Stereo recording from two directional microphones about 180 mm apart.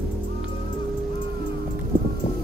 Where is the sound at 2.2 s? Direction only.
40° left (ahead or behind).